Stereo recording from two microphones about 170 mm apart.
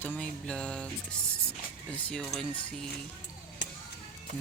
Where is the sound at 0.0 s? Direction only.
10° left (ahead or behind).